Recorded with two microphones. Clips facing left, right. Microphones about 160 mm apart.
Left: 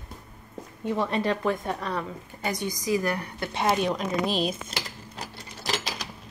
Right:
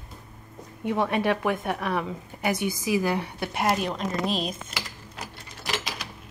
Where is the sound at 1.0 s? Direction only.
65° right (ahead or behind).